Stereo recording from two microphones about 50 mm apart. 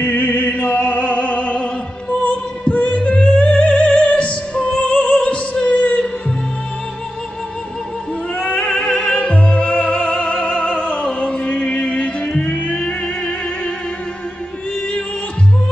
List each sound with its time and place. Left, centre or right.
0.0 s music: left
3.3 s opera: left
8.4 s music: left